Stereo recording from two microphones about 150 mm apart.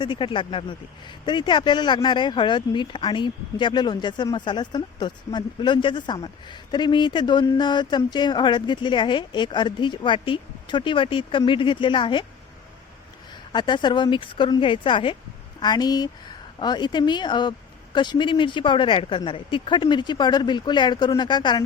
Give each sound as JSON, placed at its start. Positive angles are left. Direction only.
{"t": 0.0, "sound": "speech", "side_deg": 30}
{"t": 13.5, "sound": "speech", "side_deg": 30}